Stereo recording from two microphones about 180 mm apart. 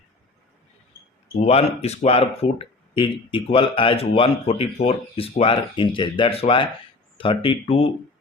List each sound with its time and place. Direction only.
1.4 s speech: 35° left (ahead or behind)